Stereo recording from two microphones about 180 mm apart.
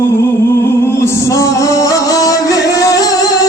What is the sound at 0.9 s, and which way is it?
Music, 15° left (ahead or behind).